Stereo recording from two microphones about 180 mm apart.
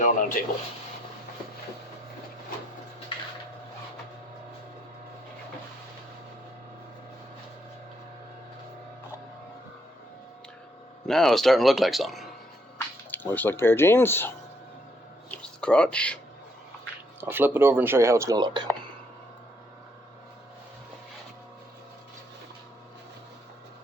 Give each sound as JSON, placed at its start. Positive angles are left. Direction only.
{"t": 0.0, "sound": "speech", "side_deg": 45}
{"t": 11.0, "sound": "speech", "side_deg": 0}
{"t": 13.1, "sound": "speech", "side_deg": 10}
{"t": 15.3, "sound": "a sound", "side_deg": 5}
{"t": 17.2, "sound": "speech", "side_deg": -10}